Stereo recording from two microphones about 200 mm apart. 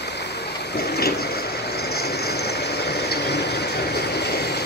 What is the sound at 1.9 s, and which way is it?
Vehicle, 55° left (ahead or behind).